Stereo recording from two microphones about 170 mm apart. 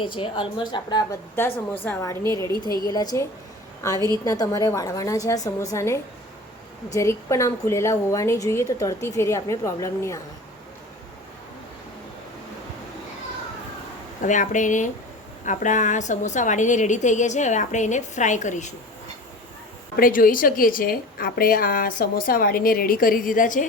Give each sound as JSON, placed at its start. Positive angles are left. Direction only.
{"t": 0.0, "sound": "a woman's voice", "side_deg": 30}
{"t": 1.4, "sound": "a woman's voice", "side_deg": 10}
{"t": 14.2, "sound": "a woman's voice", "side_deg": 45}
{"t": 20.0, "sound": "a woman's voice", "side_deg": 55}